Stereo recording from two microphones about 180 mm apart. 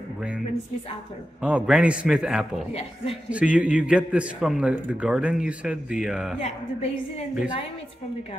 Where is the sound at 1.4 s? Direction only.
5° right (ahead or behind).